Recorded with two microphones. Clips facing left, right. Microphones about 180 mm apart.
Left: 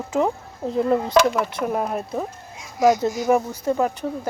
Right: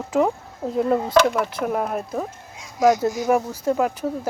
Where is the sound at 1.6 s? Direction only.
5° right (ahead or behind).